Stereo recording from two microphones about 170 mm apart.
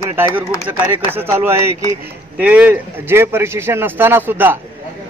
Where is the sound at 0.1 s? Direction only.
15° right (ahead or behind).